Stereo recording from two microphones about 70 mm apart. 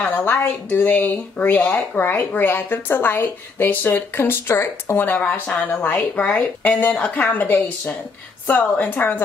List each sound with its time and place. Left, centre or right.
0.0 s speech: left